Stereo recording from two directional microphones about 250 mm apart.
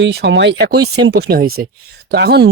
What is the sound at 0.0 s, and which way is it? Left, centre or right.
Speech, right.